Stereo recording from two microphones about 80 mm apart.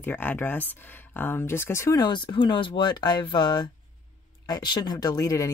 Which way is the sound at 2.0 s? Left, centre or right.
Left.